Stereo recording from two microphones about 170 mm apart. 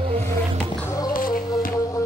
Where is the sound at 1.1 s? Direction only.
55° left (ahead or behind).